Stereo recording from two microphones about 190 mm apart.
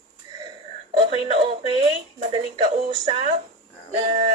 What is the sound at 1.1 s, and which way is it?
Speech, 30° right (ahead or behind).